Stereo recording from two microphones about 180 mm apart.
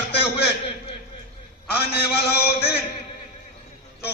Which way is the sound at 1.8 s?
65° left (ahead or behind).